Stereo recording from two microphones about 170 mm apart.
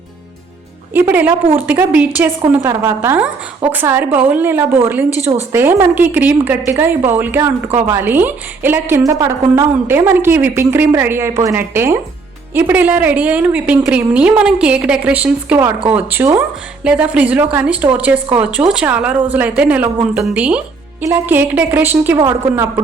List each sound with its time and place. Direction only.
0.9 s a woman's voice: 10° right (ahead or behind)